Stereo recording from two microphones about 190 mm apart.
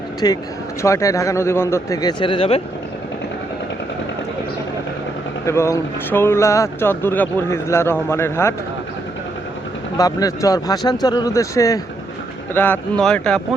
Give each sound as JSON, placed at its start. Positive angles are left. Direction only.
{"t": 0.2, "sound": "a man's voice", "side_deg": 20}
{"t": 5.5, "sound": "speech", "side_deg": 15}
{"t": 10.0, "sound": "a man's voice", "side_deg": 20}